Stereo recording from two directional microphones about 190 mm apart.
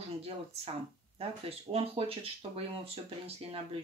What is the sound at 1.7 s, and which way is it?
Speech, 30° right (ahead or behind).